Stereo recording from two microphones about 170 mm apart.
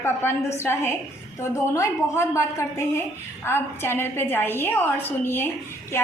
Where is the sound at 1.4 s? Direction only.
15° left (ahead or behind).